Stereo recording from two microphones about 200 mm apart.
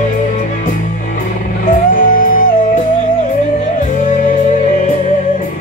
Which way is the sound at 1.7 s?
40° left (ahead or behind).